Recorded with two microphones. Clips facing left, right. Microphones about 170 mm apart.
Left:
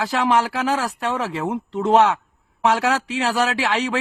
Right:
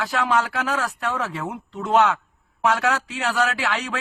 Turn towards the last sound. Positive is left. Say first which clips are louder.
# left 5 dB
turn(degrees=30)  # may be behind; listen again after turning